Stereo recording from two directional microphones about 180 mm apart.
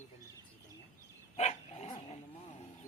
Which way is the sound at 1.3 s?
35° left (ahead or behind).